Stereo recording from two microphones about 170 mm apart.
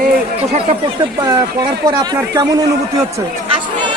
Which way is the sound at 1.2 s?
25° right (ahead or behind).